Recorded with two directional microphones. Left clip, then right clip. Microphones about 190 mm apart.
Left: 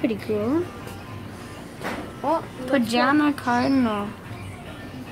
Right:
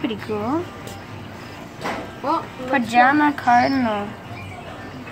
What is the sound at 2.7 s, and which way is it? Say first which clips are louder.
A woman's voice: right 5 dB; 20° left (ahead or behind).